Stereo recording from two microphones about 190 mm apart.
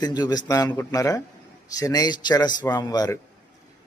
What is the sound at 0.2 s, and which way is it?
A man's voice, 20° left (ahead or behind).